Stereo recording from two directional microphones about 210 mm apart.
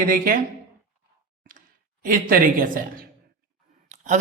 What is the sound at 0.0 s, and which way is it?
Speech, 45° right (ahead or behind).